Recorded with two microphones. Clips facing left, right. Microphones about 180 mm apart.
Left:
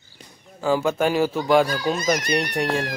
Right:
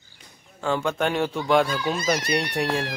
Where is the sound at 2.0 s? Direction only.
30° right (ahead or behind).